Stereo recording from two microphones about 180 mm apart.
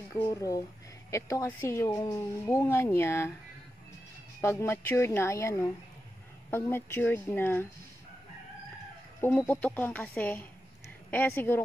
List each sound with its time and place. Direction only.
0.1 s a woman's voice: 20° left (ahead or behind)
4.4 s a woman's voice: 15° left (ahead or behind)
9.2 s a woman's voice: 10° left (ahead or behind)